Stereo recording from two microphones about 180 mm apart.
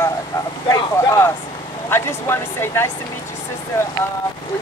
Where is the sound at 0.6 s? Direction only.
20° left (ahead or behind).